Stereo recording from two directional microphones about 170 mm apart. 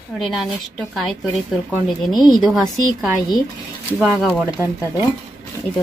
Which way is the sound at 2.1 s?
25° left (ahead or behind).